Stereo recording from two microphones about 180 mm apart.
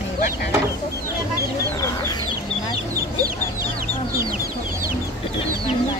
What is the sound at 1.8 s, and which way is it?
Chicken, 15° left (ahead or behind).